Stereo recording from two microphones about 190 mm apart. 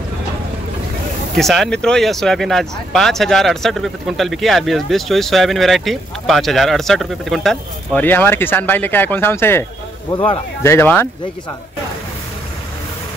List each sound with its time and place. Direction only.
1.3 s speech: centre (ahead or behind)
10.1 s speech: 25° left (ahead or behind)
10.6 s speech: 15° left (ahead or behind)